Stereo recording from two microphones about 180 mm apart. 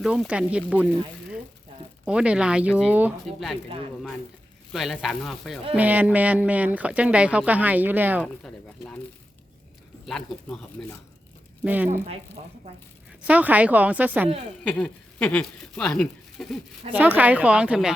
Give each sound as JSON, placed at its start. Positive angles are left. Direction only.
{"t": 0.0, "sound": "speech", "side_deg": -5}
{"t": 2.0, "sound": "speech", "side_deg": -5}
{"t": 4.7, "sound": "speech", "side_deg": 0}
{"t": 5.7, "sound": "speech", "side_deg": -10}
{"t": 8.2, "sound": "speech", "side_deg": 5}
{"t": 10.1, "sound": "speech", "side_deg": 5}
{"t": 11.6, "sound": "speech", "side_deg": -10}
{"t": 12.4, "sound": "speech", "side_deg": -35}
{"t": 13.2, "sound": "speech", "side_deg": -10}
{"t": 14.6, "sound": "speech", "side_deg": 5}
{"t": 16.9, "sound": "speech", "side_deg": -10}